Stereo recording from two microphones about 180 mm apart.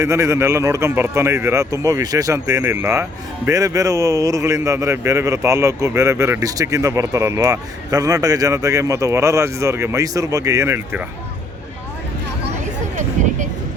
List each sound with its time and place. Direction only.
0.0 s speech: 15° right (ahead or behind)